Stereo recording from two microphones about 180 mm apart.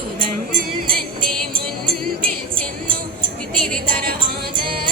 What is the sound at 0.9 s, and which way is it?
Music, 55° right (ahead or behind).